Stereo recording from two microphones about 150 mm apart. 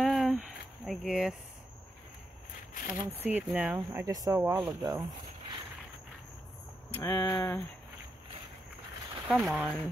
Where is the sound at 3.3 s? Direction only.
10° right (ahead or behind).